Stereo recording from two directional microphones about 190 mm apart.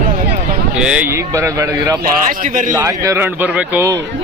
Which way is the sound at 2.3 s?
45° right (ahead or behind).